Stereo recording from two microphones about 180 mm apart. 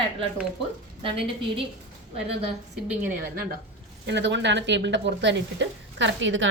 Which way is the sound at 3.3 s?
50° right (ahead or behind).